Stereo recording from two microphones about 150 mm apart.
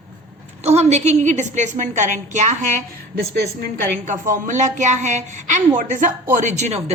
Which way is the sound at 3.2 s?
75° right (ahead or behind).